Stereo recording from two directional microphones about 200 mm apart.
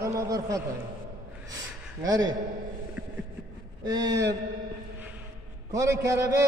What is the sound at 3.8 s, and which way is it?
Speech, 20° right (ahead or behind).